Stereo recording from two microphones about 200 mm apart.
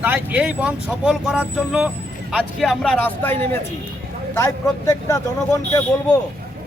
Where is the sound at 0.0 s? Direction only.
10° right (ahead or behind).